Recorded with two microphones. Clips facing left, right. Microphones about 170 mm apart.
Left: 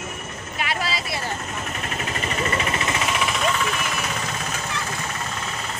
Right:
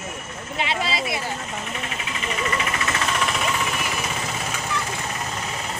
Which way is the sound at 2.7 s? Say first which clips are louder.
Left 1 dB; 20° left (ahead or behind).